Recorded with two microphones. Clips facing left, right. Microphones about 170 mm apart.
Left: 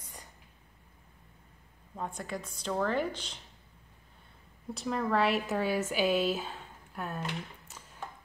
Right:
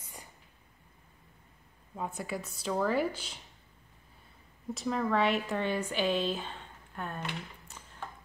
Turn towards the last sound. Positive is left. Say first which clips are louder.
# even
turn(degrees=5)  # may be behind; listen again after turning